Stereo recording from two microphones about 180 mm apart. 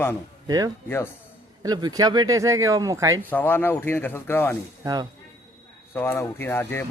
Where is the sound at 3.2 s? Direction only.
10° left (ahead or behind).